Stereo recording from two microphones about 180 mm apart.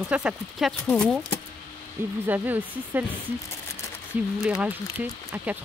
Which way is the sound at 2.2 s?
10° right (ahead or behind).